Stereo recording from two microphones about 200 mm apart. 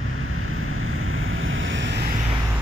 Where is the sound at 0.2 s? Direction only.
90° right; by 2.1 s 60° right (ahead or behind).